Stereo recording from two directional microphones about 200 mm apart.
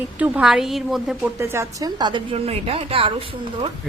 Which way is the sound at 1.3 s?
15° right (ahead or behind).